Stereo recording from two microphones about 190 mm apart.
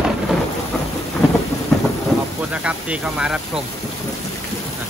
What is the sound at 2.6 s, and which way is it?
Speech, 5° right (ahead or behind).